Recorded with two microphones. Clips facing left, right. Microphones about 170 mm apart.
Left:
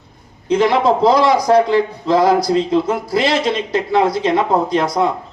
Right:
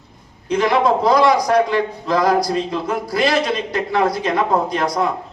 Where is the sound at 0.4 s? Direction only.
25° left (ahead or behind).